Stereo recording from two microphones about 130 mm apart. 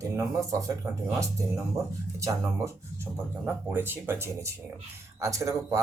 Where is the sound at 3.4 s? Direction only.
15° right (ahead or behind).